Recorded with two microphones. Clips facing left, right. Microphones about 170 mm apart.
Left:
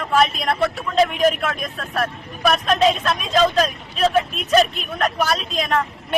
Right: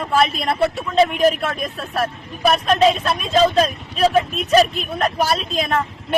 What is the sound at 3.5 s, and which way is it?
Speech, 30° right (ahead or behind).